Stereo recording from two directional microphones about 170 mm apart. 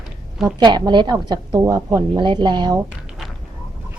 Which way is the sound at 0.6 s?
25° right (ahead or behind).